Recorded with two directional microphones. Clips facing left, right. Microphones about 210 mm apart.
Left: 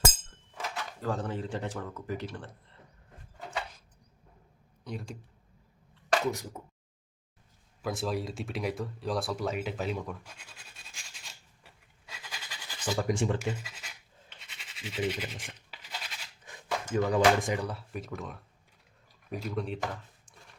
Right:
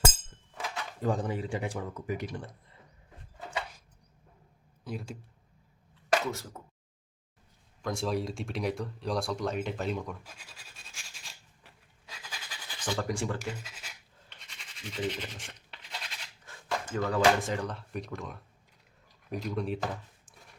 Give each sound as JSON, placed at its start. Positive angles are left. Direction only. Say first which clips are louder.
{"t": 1.0, "sound": "speech", "louder": "right 3 dB", "side_deg": -15}
{"t": 4.8, "sound": "speech", "louder": "right 1 dB", "side_deg": 0}
{"t": 6.3, "sound": "speech", "louder": "left 2 dB", "side_deg": 15}
{"t": 7.8, "sound": "a sound", "louder": "right 1 dB", "side_deg": 5}
{"t": 13.1, "sound": "speech", "louder": "left 4 dB", "side_deg": 20}
{"t": 13.6, "sound": "scratch", "louder": "even", "side_deg": 0}
{"t": 16.5, "sound": "speech", "louder": "left 2 dB", "side_deg": 15}